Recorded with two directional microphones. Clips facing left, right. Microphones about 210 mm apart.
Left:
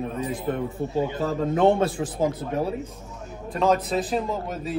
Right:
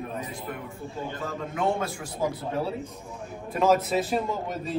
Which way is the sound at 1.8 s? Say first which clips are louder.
Left 6 dB; 20° left (ahead or behind).